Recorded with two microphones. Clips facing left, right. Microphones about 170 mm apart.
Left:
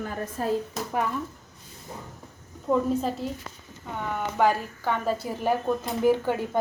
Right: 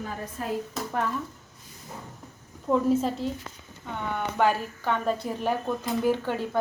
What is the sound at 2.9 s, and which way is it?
Speech, centre (ahead or behind).